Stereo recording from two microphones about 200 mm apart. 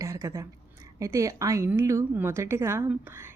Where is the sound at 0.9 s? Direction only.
15° right (ahead or behind).